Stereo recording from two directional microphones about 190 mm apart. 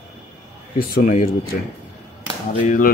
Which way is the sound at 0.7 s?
45° left (ahead or behind).